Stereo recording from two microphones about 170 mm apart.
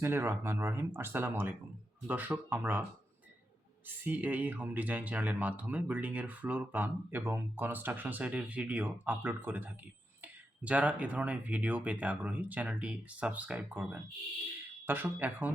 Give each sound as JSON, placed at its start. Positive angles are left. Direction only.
{"t": 0.0, "sound": "speech", "side_deg": -15}
{"t": 3.8, "sound": "speech", "side_deg": -10}